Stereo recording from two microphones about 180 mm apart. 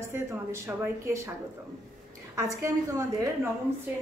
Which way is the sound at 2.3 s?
15° right (ahead or behind).